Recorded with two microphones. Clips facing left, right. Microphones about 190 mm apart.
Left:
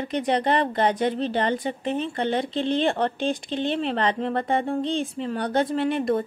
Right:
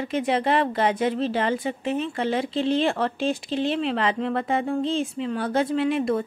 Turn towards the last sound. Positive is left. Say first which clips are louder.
# even
turn(degrees=0)  # may be behind; listen again after turning